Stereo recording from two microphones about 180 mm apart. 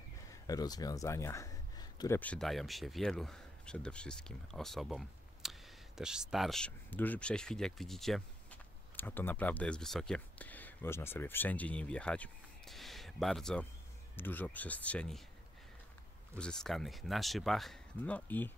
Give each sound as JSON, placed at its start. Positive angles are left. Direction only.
{"t": 0.3, "sound": "speech", "side_deg": 20}
{"t": 2.1, "sound": "speech", "side_deg": 5}
{"t": 16.3, "sound": "speech", "side_deg": 5}